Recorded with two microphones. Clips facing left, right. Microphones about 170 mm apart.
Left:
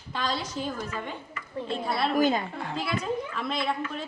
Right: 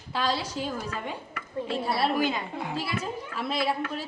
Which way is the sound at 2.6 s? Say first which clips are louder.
Even; 10° right (ahead or behind).